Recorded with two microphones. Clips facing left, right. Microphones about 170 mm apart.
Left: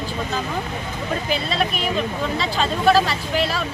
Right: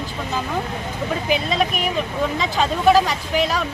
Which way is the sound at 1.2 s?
15° right (ahead or behind).